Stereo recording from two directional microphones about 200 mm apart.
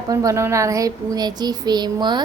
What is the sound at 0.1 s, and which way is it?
A woman's voice, 15° right (ahead or behind).